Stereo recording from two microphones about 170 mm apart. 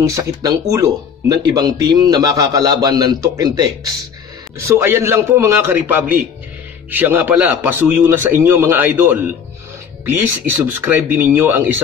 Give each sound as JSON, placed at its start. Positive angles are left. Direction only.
{"t": 0.1, "sound": "a man's voice", "side_deg": -20}